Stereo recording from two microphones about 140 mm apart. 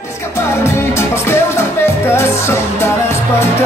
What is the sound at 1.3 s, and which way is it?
Music, 20° left (ahead or behind).